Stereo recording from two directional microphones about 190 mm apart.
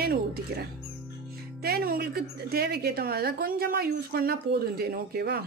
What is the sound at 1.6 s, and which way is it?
A woman's voice, 55° right (ahead or behind).